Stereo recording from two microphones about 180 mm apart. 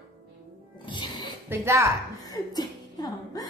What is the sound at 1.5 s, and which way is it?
Speech, 15° right (ahead or behind).